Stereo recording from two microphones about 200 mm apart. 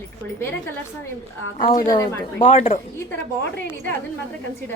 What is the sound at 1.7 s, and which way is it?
Speech, 15° left (ahead or behind).